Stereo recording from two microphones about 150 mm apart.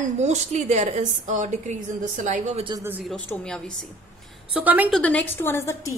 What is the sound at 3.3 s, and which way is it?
Speech, 5° left (ahead or behind).